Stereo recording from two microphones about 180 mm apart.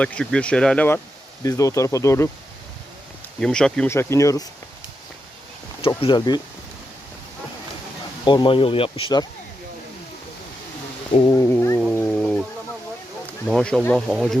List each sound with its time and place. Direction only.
0.0 s speech: 5° left (ahead or behind)
3.4 s speech: 5° left (ahead or behind)
3.9 s speech: 15° left (ahead or behind)
6.0 s speech: 25° left (ahead or behind)
8.2 s speech: 25° left (ahead or behind)
11.1 s speech: 25° left (ahead or behind)
11.5 s a sound: 15° left (ahead or behind)
12.0 s a sound: 5° left (ahead or behind)
13.5 s speech: 5° left (ahead or behind)